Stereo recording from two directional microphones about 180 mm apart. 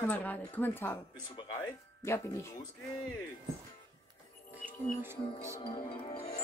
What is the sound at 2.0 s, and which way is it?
Speech, 15° left (ahead or behind).